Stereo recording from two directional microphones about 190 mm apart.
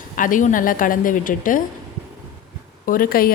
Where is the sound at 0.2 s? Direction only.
45° left (ahead or behind).